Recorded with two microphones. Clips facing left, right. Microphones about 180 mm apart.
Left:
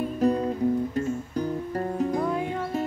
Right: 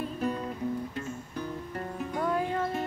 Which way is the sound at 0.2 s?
35° left (ahead or behind).